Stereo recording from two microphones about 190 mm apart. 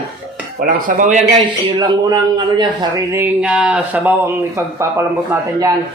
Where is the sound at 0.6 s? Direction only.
45° right (ahead or behind).